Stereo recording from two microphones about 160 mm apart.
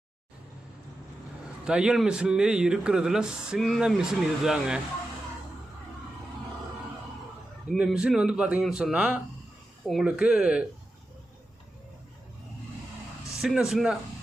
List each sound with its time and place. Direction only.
1.6 s speech: 5° right (ahead or behind)
7.7 s speech: centre (ahead or behind)
13.4 s speech: 5° right (ahead or behind)